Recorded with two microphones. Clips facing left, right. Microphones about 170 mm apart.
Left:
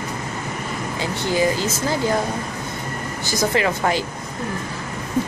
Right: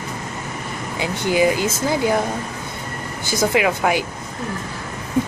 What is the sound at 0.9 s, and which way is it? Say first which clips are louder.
Speech: right 3 dB; 15° right (ahead or behind).